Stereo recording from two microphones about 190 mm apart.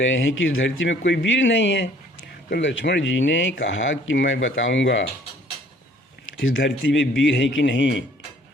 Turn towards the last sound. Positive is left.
turn(degrees=70)  # may be behind; listen again after turning